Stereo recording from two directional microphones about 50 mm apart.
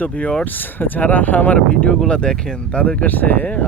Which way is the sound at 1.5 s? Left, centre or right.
Centre.